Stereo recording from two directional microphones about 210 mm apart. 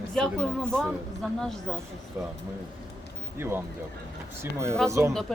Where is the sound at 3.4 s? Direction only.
10° right (ahead or behind).